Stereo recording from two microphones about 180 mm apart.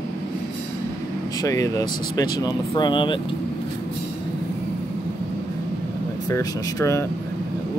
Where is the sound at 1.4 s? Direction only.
20° left (ahead or behind).